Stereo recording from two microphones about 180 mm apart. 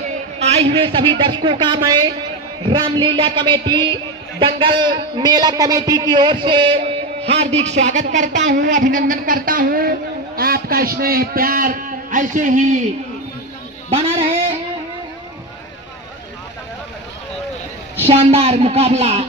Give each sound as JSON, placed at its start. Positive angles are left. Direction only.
{"t": 0.4, "sound": "a woman's voice", "side_deg": -35}
{"t": 18.0, "sound": "a man's voice", "side_deg": -35}